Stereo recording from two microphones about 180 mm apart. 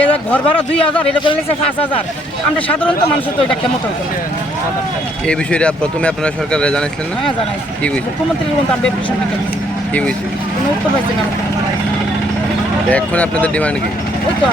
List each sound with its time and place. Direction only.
0.0 s a man's voice: 10° left (ahead or behind)
1.0 s speech: 30° left (ahead or behind)
5.3 s speech: 5° left (ahead or behind)
12.9 s speech: 10° left (ahead or behind)